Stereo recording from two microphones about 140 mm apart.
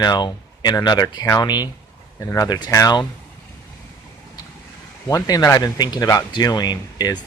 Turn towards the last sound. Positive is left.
turn(degrees=30)  # may be behind; listen again after turning